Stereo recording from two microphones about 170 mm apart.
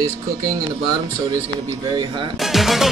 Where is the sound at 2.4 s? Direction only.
Centre (ahead or behind).